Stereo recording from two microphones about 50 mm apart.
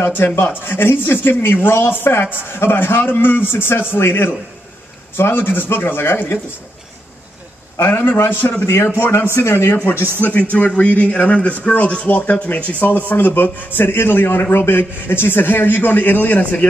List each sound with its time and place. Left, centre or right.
0.2 s a man's voice: left
7.7 s a man's voice: left
10.5 s speech: left
13.1 s a man's voice: left